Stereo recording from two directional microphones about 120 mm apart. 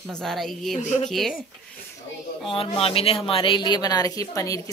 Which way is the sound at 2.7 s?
50° left (ahead or behind).